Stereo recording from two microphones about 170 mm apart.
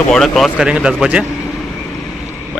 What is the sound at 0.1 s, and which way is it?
Speech, centre (ahead or behind).